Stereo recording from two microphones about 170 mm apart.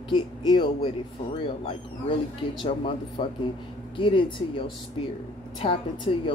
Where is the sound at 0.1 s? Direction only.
25° left (ahead or behind).